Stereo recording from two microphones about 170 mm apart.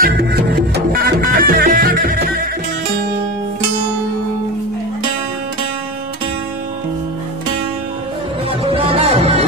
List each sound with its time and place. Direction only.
0.0 s music: 65° right (ahead or behind)
8.5 s music: 35° right (ahead or behind)